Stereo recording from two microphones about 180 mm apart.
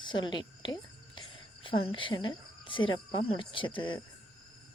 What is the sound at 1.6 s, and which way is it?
Speech, 30° left (ahead or behind).